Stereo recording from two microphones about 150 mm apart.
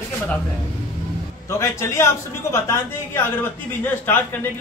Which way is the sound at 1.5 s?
20° left (ahead or behind).